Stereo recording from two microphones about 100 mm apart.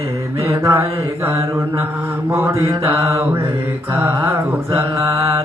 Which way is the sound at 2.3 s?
30° right (ahead or behind).